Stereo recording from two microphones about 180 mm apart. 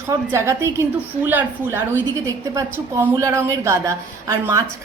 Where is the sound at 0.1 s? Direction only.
15° right (ahead or behind).